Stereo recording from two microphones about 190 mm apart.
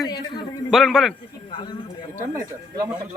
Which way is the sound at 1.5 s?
25° left (ahead or behind).